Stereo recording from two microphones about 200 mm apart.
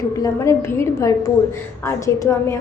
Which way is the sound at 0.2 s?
15° left (ahead or behind).